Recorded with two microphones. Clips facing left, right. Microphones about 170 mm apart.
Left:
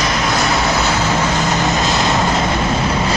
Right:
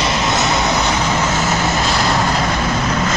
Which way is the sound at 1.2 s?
15° left (ahead or behind).